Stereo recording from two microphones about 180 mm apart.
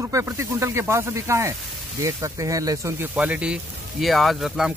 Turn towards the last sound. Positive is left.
turn(degrees=0)  # may be behind; listen again after turning